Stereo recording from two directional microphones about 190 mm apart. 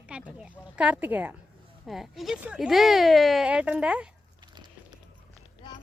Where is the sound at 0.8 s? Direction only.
5° right (ahead or behind).